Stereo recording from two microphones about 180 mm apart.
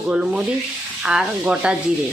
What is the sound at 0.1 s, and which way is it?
Sanding, 5° right (ahead or behind).